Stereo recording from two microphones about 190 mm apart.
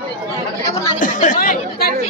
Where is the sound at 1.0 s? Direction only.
40° left (ahead or behind).